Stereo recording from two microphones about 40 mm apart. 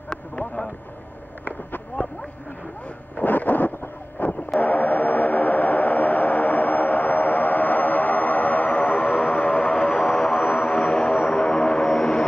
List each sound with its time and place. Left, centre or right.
1.4 s a sound: left
3.2 s a sound: left
4.6 s effects unit: left
9.7 s vehicle: left
10.0 s aircraft: centre
10.4 s aircraft: left